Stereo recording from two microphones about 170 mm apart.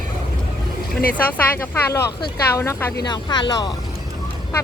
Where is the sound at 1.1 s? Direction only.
10° left (ahead or behind).